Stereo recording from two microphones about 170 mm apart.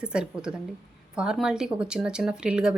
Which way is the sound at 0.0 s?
5° right (ahead or behind).